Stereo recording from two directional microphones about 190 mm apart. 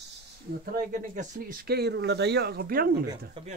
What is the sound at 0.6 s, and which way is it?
Speech, 45° right (ahead or behind).